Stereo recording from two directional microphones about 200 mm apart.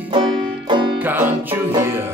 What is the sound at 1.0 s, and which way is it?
Music, 10° right (ahead or behind).